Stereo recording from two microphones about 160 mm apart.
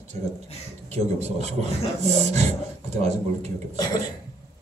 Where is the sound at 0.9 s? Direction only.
45° right (ahead or behind).